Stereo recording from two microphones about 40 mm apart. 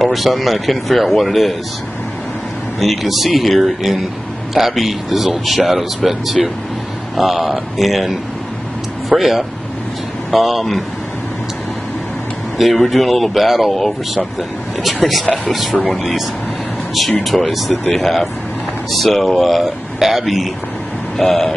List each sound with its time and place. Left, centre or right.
0.0 s speech: centre
2.8 s speech: centre
12.5 s speech: centre
14.9 s speech: centre
17.2 s speech: centre
21.2 s a sound: centre